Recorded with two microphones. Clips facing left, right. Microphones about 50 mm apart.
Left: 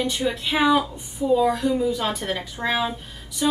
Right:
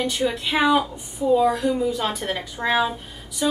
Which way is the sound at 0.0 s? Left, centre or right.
Centre.